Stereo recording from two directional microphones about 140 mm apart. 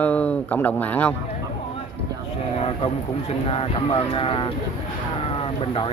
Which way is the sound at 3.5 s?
40° left (ahead or behind).